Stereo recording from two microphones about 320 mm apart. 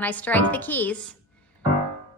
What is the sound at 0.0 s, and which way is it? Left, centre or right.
A woman's voice, centre.